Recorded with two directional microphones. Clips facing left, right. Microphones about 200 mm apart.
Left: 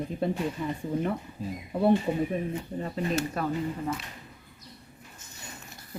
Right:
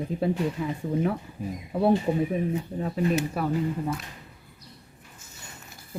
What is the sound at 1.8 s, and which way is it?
Speech, 5° right (ahead or behind).